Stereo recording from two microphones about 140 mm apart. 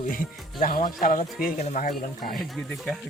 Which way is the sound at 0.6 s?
80° left.